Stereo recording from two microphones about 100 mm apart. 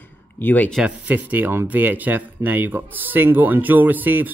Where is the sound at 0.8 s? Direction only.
15° right (ahead or behind).